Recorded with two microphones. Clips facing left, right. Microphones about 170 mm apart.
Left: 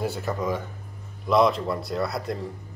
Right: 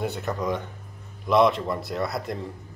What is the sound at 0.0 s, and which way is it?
Speech, centre (ahead or behind).